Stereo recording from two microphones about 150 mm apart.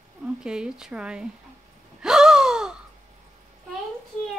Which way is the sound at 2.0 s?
5° right (ahead or behind).